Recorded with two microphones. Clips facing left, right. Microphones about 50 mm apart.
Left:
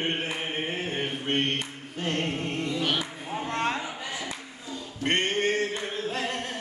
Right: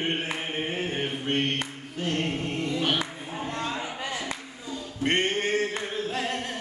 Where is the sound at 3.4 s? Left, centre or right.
Left.